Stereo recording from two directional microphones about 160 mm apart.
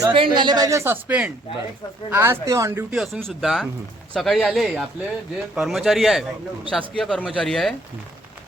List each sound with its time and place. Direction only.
0.1 s a woman's voice: 30° right (ahead or behind)
2.9 s speech: centre (ahead or behind)